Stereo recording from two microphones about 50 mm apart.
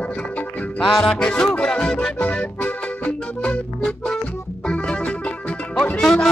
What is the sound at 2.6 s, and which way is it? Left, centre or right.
Accordion, left.